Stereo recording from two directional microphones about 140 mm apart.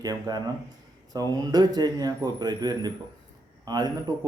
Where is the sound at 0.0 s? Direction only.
30° right (ahead or behind).